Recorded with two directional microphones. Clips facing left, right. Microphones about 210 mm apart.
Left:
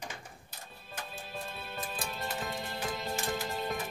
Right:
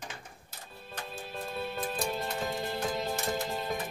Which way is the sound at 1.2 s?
Centre (ahead or behind).